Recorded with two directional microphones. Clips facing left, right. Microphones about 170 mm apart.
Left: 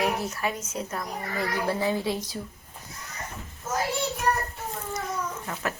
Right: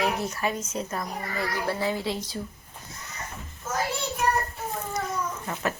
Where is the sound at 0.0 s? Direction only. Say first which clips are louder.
Even; centre (ahead or behind).